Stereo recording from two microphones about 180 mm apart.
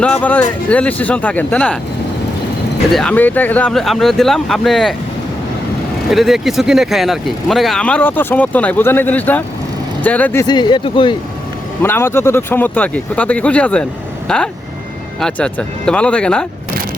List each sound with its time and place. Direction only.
0.0 s speech: 10° left (ahead or behind)
2.9 s speech: 5° left (ahead or behind)
6.1 s speech: centre (ahead or behind)
10.4 s speech: 25° left (ahead or behind)
11.8 s speech: 15° left (ahead or behind)